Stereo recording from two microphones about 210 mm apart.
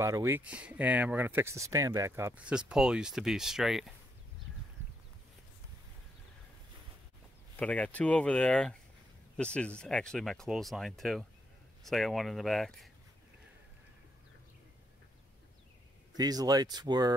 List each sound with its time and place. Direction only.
0.0 s speech: 15° right (ahead or behind)
7.5 s speech: 5° left (ahead or behind)
16.2 s speech: 20° right (ahead or behind)